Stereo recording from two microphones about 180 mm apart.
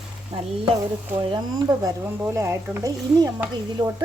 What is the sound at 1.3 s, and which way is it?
Speech, 20° right (ahead or behind).